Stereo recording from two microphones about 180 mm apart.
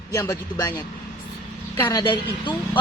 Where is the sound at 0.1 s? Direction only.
20° left (ahead or behind).